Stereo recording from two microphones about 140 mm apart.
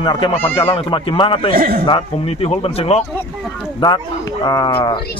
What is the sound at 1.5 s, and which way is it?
Speech, 90° right.